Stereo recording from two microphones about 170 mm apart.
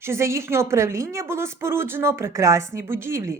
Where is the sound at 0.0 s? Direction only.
15° right (ahead or behind).